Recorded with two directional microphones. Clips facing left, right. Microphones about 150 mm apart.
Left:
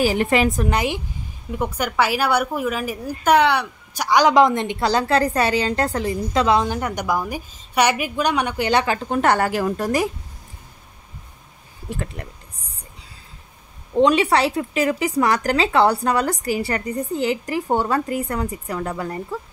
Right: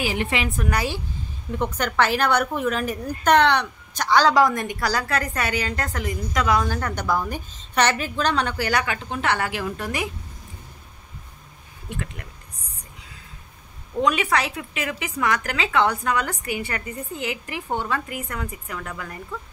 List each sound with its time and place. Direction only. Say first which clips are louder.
0.0 s a woman's voice: left 7 dB; 40° left (ahead or behind)
0.7 s a woman's voice: left 3 dB; 20° left (ahead or behind)
9.1 s a woman's voice: left 7 dB; 45° left (ahead or behind)
11.9 s a woman's voice: left 4 dB; 35° left (ahead or behind)
13.9 s a woman's voice: left 6 dB; 30° left (ahead or behind)